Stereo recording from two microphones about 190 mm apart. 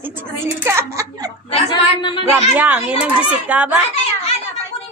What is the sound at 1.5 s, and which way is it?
Speech, 25° left (ahead or behind).